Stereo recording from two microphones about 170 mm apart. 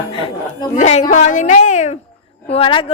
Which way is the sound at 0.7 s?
40° left (ahead or behind).